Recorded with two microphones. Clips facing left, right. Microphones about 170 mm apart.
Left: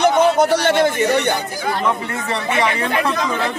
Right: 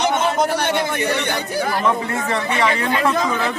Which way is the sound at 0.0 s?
60° left (ahead or behind).